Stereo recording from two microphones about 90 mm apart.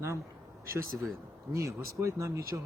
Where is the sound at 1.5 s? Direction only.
30° right (ahead or behind).